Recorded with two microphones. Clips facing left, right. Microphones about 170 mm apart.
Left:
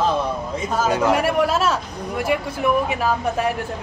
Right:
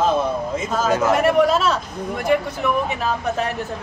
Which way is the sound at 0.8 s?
10° left (ahead or behind).